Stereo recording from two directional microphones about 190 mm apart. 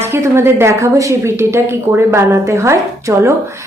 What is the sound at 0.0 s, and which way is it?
Speech, 15° right (ahead or behind).